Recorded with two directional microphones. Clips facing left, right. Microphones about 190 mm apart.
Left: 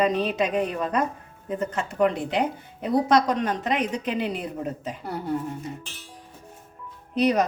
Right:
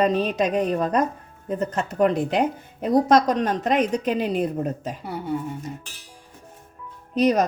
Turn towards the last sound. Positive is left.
turn(degrees=-40)  # may be behind; listen again after turning